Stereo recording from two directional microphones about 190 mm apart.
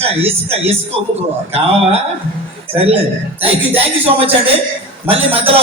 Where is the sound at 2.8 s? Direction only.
30° right (ahead or behind).